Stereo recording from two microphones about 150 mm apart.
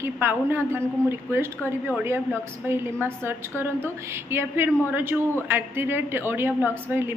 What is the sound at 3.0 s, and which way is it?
A woman's voice, 15° right (ahead or behind).